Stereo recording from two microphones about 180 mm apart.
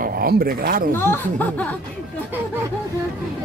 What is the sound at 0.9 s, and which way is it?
Speech, 10° left (ahead or behind).